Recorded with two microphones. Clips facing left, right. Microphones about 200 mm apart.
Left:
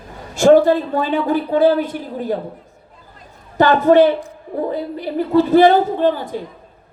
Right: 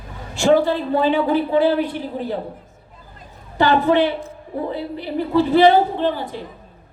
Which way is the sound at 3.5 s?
45° left (ahead or behind).